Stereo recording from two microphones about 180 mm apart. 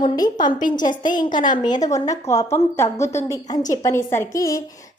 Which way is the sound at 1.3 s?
45° left (ahead or behind).